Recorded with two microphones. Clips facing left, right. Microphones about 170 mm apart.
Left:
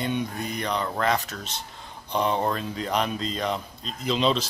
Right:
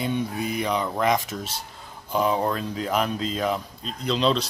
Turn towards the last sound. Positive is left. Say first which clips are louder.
# right 1 dB
turn(degrees=5)  # may be behind; listen again after turning